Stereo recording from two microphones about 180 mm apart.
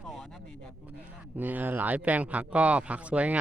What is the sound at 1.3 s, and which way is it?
Speech, 10° right (ahead or behind).